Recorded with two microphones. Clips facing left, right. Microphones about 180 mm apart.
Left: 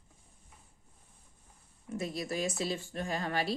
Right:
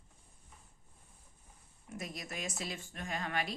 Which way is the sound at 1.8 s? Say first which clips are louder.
Left 8 dB; 30° left (ahead or behind).